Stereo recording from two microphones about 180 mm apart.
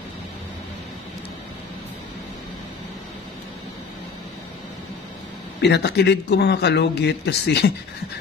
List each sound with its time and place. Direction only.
5.6 s speech: 65° left (ahead or behind)